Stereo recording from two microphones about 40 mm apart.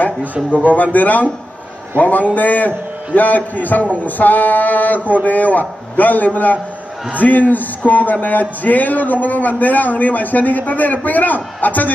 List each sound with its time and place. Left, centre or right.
0.5 s a man's voice: right
0.9 s a man's voice: left